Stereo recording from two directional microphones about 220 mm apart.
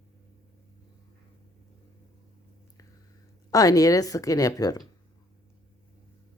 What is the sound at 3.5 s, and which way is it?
Speech, 15° left (ahead or behind).